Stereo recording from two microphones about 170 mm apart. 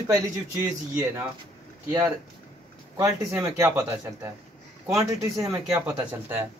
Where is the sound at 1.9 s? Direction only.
15° right (ahead or behind).